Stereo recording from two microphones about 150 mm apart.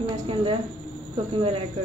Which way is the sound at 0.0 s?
35° right (ahead or behind).